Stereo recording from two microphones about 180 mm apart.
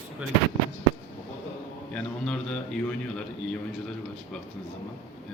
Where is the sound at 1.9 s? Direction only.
5° left (ahead or behind).